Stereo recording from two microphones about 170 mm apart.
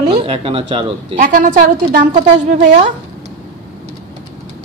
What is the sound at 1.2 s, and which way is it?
A woman's voice, 50° right (ahead or behind).